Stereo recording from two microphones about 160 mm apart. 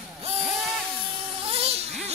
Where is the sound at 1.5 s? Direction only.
40° right (ahead or behind).